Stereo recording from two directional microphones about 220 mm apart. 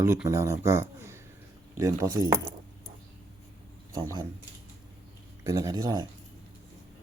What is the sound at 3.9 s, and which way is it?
Speech, 15° right (ahead or behind).